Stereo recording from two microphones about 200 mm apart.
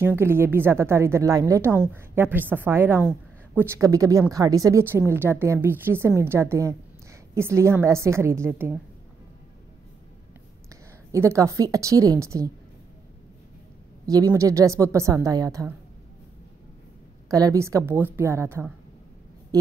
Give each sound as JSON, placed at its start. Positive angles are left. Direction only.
{"t": 0.0, "sound": "a woman's voice", "side_deg": -10}
{"t": 10.7, "sound": "a woman's voice", "side_deg": -15}
{"t": 14.3, "sound": "a woman's voice", "side_deg": -15}
{"t": 17.3, "sound": "a woman's voice", "side_deg": -15}